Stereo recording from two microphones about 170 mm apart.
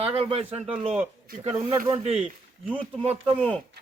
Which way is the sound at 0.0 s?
35° right (ahead or behind).